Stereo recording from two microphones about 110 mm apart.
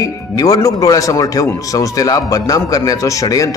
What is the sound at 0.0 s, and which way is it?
A man's voice, 30° left (ahead or behind).